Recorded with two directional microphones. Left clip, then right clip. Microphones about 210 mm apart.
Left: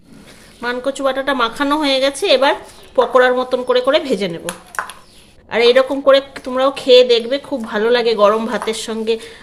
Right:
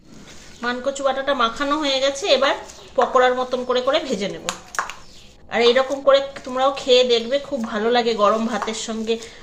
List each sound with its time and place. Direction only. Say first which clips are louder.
0.6 s a woman's voice: left 3 dB; 50° left (ahead or behind)
5.5 s a woman's voice: left 5 dB; 50° left (ahead or behind)